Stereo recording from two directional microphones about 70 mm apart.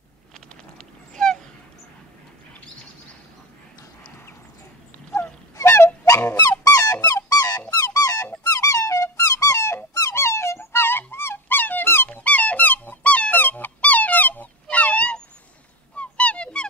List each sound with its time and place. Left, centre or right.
0.7 s a sound: centre
5.1 s honk: left
6.0 s fowl: left
6.6 s music: left
7.2 s dog: left
7.8 s music: left
8.5 s squeak: left
10.1 s dog: left
12.1 s a sound: left
16.0 s fowl: centre